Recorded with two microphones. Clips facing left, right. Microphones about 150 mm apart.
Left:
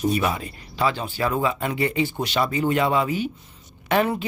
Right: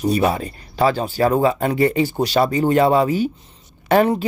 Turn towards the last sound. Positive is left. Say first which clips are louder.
# right 6 dB
turn(degrees=-35)  # may be behind; listen again after turning